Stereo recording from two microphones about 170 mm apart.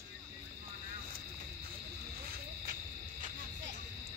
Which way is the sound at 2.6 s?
55° right (ahead or behind).